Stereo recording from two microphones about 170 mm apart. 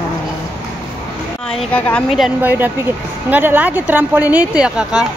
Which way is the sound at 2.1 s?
5° right (ahead or behind).